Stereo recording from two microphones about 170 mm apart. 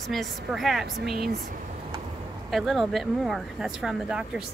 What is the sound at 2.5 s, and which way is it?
Speech, centre (ahead or behind).